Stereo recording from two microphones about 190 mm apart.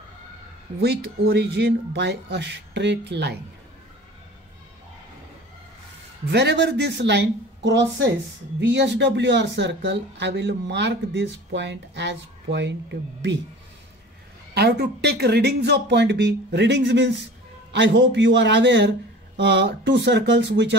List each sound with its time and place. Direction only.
0.7 s speech: 60° right (ahead or behind)
6.2 s speech: 65° right (ahead or behind)
14.5 s speech: 60° right (ahead or behind)